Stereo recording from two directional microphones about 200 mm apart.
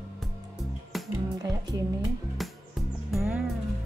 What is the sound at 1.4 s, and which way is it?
Speech, 20° right (ahead or behind).